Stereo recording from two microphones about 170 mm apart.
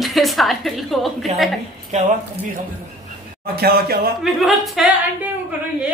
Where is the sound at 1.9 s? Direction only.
45° right (ahead or behind).